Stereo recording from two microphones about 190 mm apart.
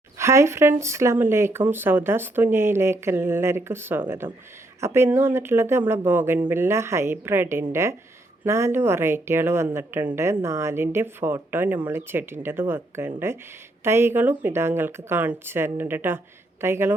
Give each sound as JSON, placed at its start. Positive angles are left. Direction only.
{"t": 0.2, "sound": "speech", "side_deg": -15}